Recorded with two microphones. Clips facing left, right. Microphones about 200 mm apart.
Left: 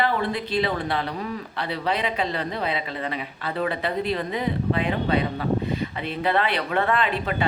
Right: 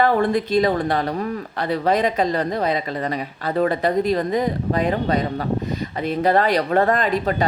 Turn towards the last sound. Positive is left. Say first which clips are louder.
# right 5 dB
turn(degrees=-40)  # may be behind; listen again after turning